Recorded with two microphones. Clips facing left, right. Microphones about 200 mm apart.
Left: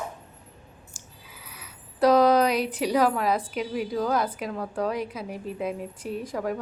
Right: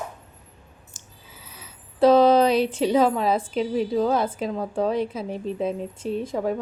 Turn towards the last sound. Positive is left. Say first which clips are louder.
# right 4 dB
turn(degrees=-25)  # may be behind; listen again after turning